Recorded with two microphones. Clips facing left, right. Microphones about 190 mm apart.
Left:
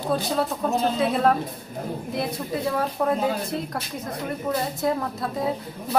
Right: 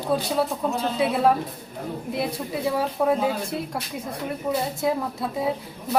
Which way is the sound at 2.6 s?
5° right (ahead or behind).